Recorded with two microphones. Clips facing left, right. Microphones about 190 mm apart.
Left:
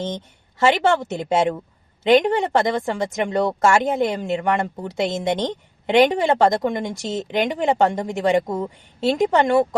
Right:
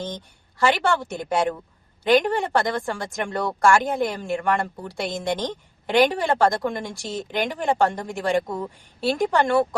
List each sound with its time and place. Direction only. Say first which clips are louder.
0.0 s a woman's voice: left 4 dB; 20° left (ahead or behind)